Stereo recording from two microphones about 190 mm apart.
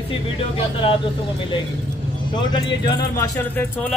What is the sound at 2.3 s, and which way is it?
Speech, 20° left (ahead or behind).